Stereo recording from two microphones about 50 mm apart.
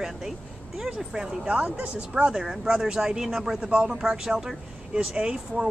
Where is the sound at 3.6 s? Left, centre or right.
Right.